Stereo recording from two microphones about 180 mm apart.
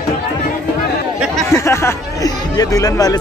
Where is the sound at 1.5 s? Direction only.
15° left (ahead or behind).